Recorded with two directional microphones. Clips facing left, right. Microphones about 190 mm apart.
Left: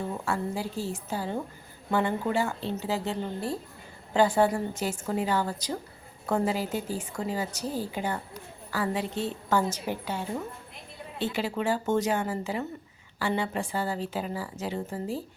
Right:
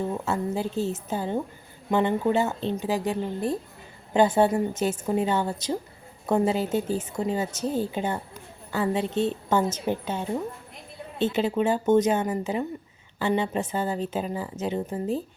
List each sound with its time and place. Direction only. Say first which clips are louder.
0.3 s a woman's voice: right 3 dB; 20° right (ahead or behind)